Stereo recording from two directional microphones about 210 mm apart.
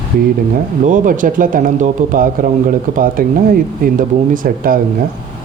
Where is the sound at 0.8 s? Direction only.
40° right (ahead or behind).